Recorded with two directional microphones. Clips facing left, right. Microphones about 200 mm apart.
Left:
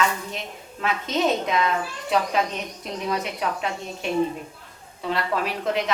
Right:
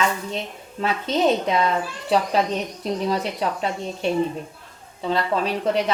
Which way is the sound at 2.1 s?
30° right (ahead or behind).